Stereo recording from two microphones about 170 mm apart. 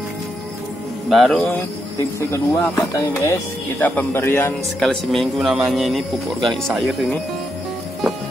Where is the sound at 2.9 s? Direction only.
15° left (ahead or behind).